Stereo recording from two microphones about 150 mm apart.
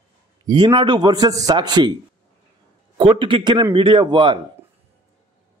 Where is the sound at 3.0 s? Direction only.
35° right (ahead or behind).